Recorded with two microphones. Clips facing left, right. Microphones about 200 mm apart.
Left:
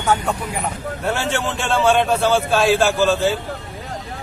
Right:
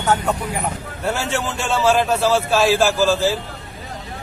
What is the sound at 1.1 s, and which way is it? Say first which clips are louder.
A man's voice: left 1 dB; centre (ahead or behind).